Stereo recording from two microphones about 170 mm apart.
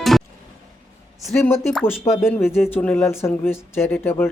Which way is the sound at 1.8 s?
15° left (ahead or behind).